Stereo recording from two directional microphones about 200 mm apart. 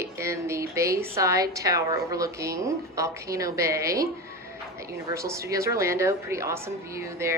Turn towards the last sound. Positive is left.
turn(degrees=-15)  # may be behind; listen again after turning